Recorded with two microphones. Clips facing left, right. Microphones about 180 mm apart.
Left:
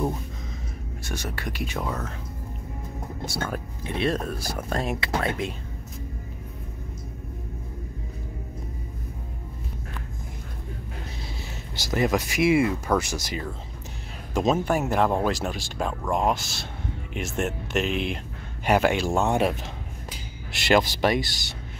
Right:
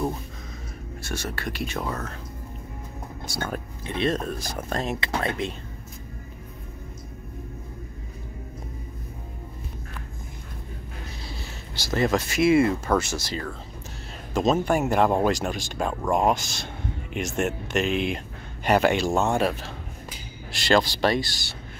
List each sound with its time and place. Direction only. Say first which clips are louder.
1.0 s speech: right 1 dB; 15° left (ahead or behind)
1.8 s speech: left 2 dB; 5° left (ahead or behind)
3.3 s speech: even; centre (ahead or behind)
11.7 s speech: even; 15° left (ahead or behind)
19.2 s speech: even; 20° left (ahead or behind)